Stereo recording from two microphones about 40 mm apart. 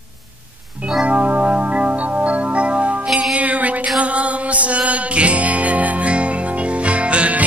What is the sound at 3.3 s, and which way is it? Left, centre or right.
Music, right.